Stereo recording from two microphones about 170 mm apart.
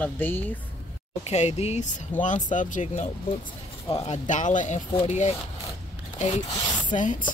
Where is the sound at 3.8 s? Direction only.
35° left (ahead or behind).